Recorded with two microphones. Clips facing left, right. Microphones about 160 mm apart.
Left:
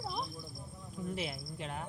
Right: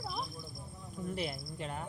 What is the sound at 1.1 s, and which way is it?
Speech, centre (ahead or behind).